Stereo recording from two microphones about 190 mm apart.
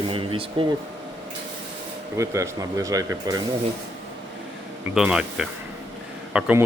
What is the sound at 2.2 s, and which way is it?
Speech, 15° right (ahead or behind).